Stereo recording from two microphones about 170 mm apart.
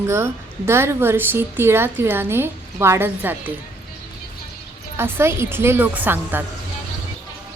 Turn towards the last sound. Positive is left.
turn(degrees=-10)  # may be behind; listen again after turning